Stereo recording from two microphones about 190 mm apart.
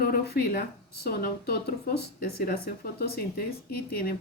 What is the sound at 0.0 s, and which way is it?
Speech, 55° left (ahead or behind).